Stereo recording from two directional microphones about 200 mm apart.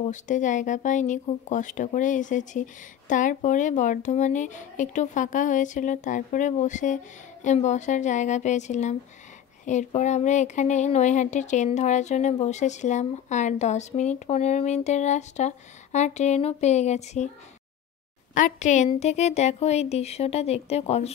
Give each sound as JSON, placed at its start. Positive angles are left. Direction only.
{"t": 0.0, "sound": "speech", "side_deg": 40}
{"t": 18.3, "sound": "speech", "side_deg": 40}